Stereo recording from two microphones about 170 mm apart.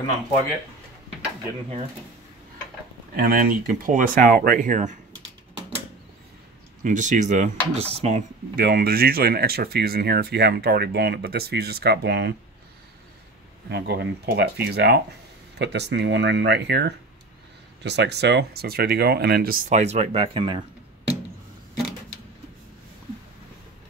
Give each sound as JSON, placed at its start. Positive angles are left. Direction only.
{"t": 3.2, "sound": "speech", "side_deg": -55}
{"t": 6.8, "sound": "speech", "side_deg": -45}
{"t": 8.5, "sound": "speech", "side_deg": -60}
{"t": 13.7, "sound": "speech", "side_deg": -75}